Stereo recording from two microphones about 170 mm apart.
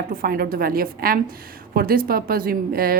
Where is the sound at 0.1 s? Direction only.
60° right (ahead or behind).